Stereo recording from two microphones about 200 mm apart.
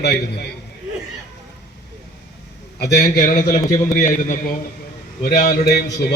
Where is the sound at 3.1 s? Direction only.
40° left (ahead or behind).